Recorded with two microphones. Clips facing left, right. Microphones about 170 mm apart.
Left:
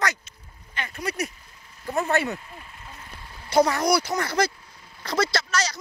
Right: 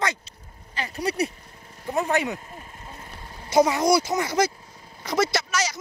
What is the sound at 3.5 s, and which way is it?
Speech, 20° right (ahead or behind).